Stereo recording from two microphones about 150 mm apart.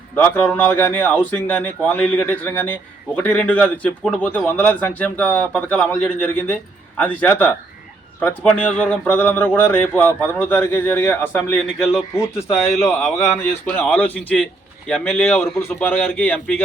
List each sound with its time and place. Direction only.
0.2 s a man's voice: 10° left (ahead or behind)